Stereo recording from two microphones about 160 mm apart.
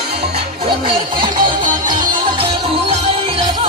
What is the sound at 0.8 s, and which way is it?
Music, 30° right (ahead or behind).